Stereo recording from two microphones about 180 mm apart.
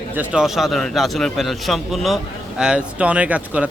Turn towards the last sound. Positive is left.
turn(degrees=-5)  # may be behind; listen again after turning